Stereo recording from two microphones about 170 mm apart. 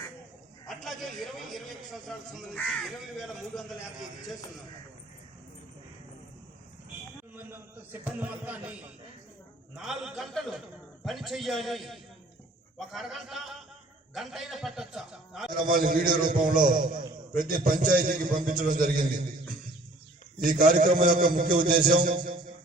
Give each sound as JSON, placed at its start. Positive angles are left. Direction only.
{"t": 0.7, "sound": "a man's voice", "side_deg": 0}
{"t": 8.0, "sound": "a man's voice", "side_deg": -10}
{"t": 9.7, "sound": "a man's voice", "side_deg": 0}
{"t": 15.5, "sound": "a man's voice", "side_deg": -55}
{"t": 20.4, "sound": "a man's voice", "side_deg": -55}